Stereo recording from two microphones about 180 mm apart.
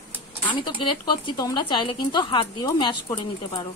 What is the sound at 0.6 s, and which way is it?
Speech, 25° left (ahead or behind).